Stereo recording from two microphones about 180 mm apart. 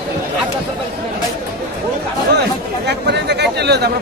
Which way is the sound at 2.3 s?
70° right (ahead or behind).